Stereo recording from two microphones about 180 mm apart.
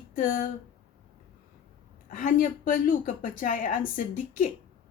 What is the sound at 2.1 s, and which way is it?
Speech, 50° left (ahead or behind).